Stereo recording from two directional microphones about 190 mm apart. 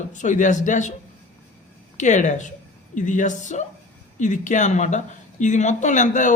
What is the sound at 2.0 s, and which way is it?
Speech, 40° left (ahead or behind).